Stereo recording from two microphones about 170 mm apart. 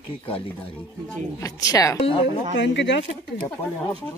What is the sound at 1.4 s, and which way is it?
Speech, 20° left (ahead or behind).